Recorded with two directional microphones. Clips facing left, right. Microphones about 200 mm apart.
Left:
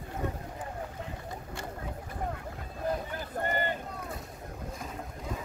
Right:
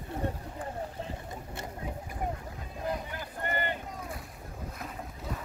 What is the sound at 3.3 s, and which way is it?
Boat, 50° left (ahead or behind).